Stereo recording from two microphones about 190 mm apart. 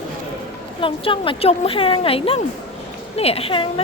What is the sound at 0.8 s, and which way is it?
A woman's voice, 30° left (ahead or behind).